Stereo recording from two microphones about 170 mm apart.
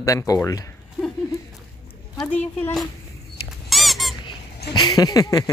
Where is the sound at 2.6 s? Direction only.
Centre (ahead or behind).